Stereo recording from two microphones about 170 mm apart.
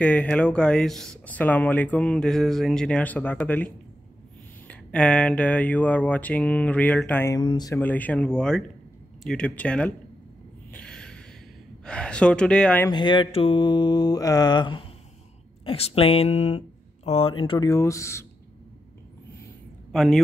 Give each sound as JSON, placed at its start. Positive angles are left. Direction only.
{"t": 0.0, "sound": "speech", "side_deg": 5}
{"t": 7.3, "sound": "mantra", "side_deg": 25}
{"t": 7.8, "sound": "speech", "side_deg": 10}
{"t": 10.7, "sound": "a sound", "side_deg": 5}
{"t": 11.8, "sound": "speech", "side_deg": 5}
{"t": 12.9, "sound": "mantra", "side_deg": 30}
{"t": 15.6, "sound": "speech", "side_deg": 35}
{"t": 19.9, "sound": "speech", "side_deg": 0}